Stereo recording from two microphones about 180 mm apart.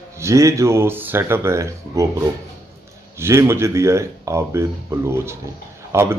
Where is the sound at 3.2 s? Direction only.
15° right (ahead or behind).